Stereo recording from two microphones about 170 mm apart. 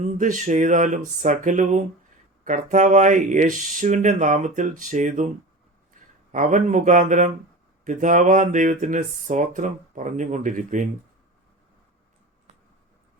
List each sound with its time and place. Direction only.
0.2 s speech: 50° right (ahead or behind)
6.0 s a sound: 50° right (ahead or behind)
6.3 s speech: 45° right (ahead or behind)